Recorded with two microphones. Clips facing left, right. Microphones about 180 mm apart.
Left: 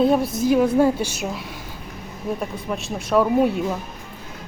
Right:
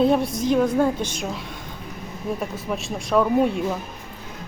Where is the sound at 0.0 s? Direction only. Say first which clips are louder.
Left 1 dB; centre (ahead or behind).